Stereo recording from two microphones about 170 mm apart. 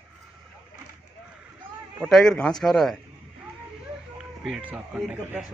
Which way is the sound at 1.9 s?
Centre (ahead or behind).